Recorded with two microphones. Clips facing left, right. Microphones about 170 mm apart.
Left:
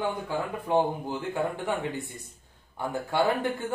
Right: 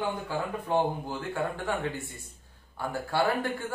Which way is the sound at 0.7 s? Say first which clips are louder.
Left 3 dB; 15° left (ahead or behind).